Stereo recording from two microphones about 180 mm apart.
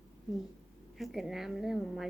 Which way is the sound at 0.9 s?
Centre (ahead or behind).